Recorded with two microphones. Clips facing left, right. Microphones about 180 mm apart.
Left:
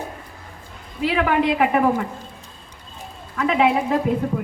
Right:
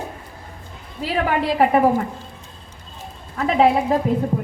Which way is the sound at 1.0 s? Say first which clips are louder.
Left 2 dB; 35° right (ahead or behind).